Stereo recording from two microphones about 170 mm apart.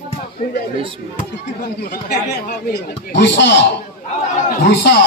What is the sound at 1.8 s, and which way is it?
Speech, 60° left (ahead or behind).